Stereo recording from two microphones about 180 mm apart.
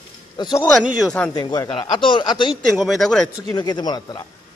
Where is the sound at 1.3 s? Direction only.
20° left (ahead or behind).